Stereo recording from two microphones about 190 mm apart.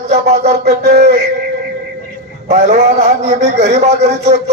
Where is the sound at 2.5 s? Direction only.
35° right (ahead or behind).